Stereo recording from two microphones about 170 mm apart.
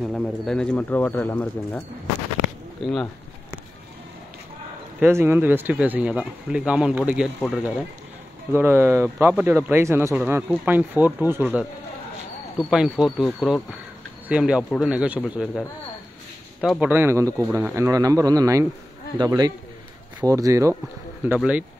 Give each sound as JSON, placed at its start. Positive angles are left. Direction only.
{"t": 0.0, "sound": "speech", "side_deg": 0}
{"t": 2.8, "sound": "speech", "side_deg": 0}
{"t": 5.0, "sound": "speech", "side_deg": -15}
{"t": 16.8, "sound": "speech", "side_deg": -10}
{"t": 21.4, "sound": "speech", "side_deg": -5}